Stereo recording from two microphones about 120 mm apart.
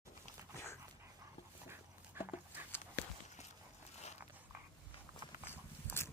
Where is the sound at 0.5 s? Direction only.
20° left (ahead or behind).